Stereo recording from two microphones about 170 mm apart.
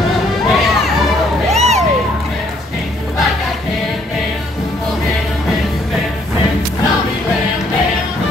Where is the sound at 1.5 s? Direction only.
40° right (ahead or behind).